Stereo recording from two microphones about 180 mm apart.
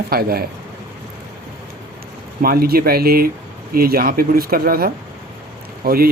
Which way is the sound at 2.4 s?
55° right (ahead or behind).